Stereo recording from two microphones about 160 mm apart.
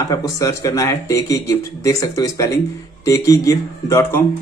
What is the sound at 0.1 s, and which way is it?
Speech, 20° left (ahead or behind).